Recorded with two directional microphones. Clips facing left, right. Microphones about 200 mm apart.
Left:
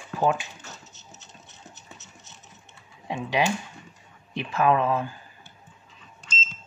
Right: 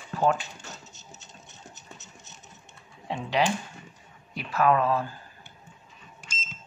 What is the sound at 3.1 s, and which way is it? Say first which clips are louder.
Speech: left 1 dB; 15° left (ahead or behind).